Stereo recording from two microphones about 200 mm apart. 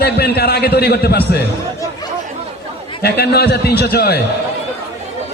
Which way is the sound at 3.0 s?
55° left (ahead or behind).